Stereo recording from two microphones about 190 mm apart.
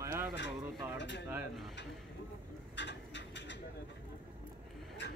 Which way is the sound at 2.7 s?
70° left (ahead or behind).